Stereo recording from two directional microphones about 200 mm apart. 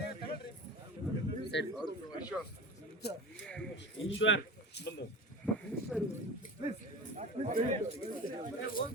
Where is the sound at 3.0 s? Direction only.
55° left (ahead or behind).